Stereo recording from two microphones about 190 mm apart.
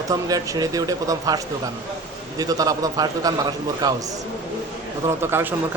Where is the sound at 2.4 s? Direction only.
20° right (ahead or behind).